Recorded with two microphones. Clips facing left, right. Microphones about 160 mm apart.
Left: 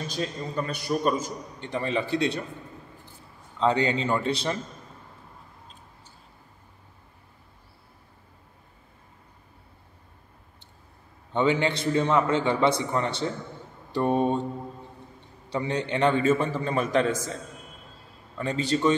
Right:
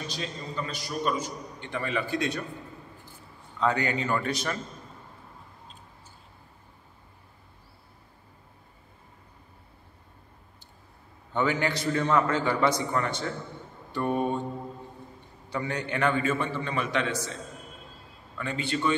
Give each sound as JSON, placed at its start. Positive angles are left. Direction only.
{"t": 0.1, "sound": "a man's voice", "side_deg": 50}
{"t": 1.6, "sound": "a man's voice", "side_deg": 30}
{"t": 3.5, "sound": "a man's voice", "side_deg": 25}
{"t": 11.3, "sound": "a man's voice", "side_deg": 25}
{"t": 15.5, "sound": "a man's voice", "side_deg": 30}
{"t": 18.4, "sound": "a man's voice", "side_deg": 35}